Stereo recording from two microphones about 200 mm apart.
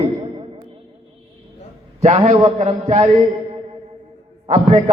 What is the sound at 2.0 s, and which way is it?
A man's voice, 30° right (ahead or behind).